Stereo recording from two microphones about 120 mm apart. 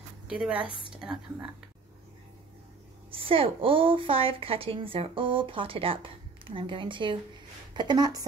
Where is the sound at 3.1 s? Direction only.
50° right (ahead or behind).